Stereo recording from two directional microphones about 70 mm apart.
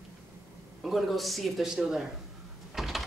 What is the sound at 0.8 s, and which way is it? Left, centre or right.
Speech, centre.